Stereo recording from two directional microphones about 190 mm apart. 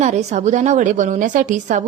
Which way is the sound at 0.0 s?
35° right (ahead or behind).